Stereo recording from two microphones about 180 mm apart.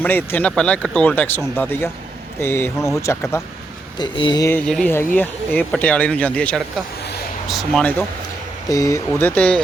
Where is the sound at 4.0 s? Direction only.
25° left (ahead or behind).